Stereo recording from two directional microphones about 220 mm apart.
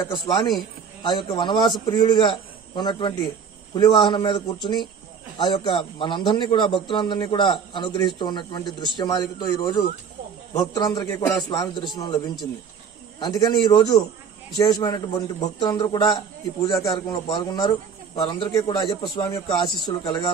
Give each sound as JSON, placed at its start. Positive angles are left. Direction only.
{"t": 0.1, "sound": "a man's voice", "side_deg": 20}
{"t": 13.2, "sound": "a man's voice", "side_deg": 20}